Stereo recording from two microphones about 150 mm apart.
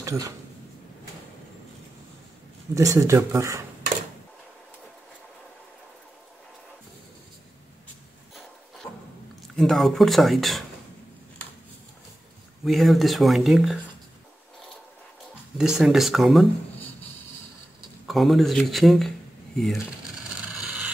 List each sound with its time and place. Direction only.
0.0 s speech: 20° right (ahead or behind)
2.7 s speech: 20° right (ahead or behind)
9.6 s speech: centre (ahead or behind)
12.6 s speech: centre (ahead or behind)
15.5 s speech: 5° right (ahead or behind)
18.0 s speech: centre (ahead or behind)
20.6 s a sound: 5° right (ahead or behind)